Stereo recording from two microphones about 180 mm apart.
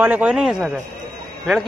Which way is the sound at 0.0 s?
10° right (ahead or behind).